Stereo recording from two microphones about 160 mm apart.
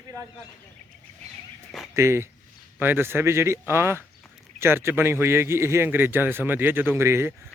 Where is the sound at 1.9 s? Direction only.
15° right (ahead or behind).